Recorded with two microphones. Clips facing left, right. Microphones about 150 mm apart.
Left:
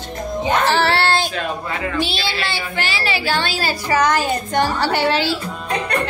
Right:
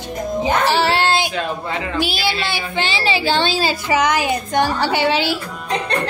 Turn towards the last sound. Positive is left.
turn(degrees=-20)  # may be behind; listen again after turning